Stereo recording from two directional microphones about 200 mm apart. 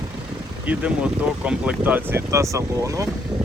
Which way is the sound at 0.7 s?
5° right (ahead or behind).